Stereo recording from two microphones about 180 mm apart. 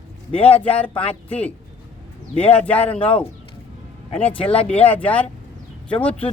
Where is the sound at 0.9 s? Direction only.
30° left (ahead or behind).